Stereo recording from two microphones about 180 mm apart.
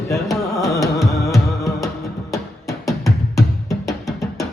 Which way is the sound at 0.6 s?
15° left (ahead or behind).